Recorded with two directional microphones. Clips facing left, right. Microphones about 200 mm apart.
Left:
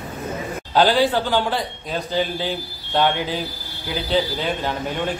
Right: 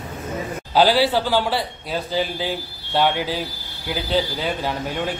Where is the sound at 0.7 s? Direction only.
10° right (ahead or behind).